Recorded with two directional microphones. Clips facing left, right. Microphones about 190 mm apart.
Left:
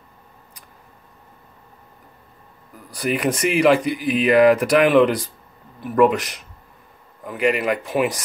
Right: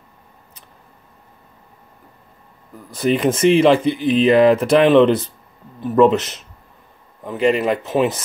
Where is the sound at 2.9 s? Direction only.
25° right (ahead or behind).